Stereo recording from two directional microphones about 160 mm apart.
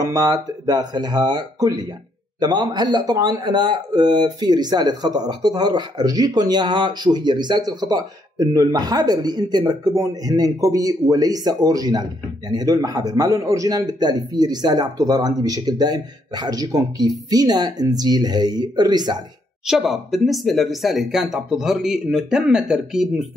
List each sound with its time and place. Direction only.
0.0 s speech: 25° right (ahead or behind)
19.6 s speech: centre (ahead or behind)